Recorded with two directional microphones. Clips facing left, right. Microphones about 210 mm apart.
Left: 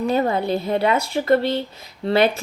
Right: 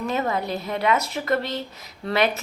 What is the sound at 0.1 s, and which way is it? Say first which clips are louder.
Speech: left 5 dB; 30° left (ahead or behind).